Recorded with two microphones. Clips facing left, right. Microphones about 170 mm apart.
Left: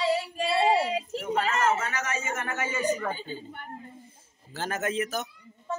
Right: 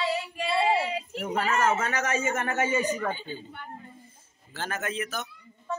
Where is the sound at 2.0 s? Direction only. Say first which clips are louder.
Right 4 dB; 40° right (ahead or behind).